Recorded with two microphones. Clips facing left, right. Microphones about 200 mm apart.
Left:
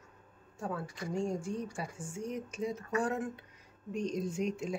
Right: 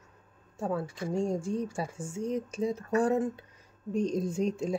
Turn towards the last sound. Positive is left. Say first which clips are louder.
# right 5 dB
turn(degrees=-35)  # may be behind; listen again after turning